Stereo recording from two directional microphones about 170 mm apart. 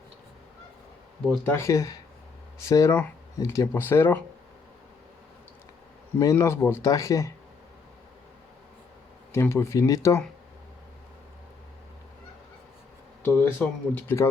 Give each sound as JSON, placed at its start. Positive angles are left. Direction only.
{"t": 1.5, "sound": "speech", "side_deg": 15}
{"t": 6.1, "sound": "speech", "side_deg": 15}
{"t": 9.3, "sound": "speech", "side_deg": 15}
{"t": 13.2, "sound": "speech", "side_deg": 10}